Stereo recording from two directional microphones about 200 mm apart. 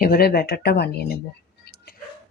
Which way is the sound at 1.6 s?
55° left (ahead or behind).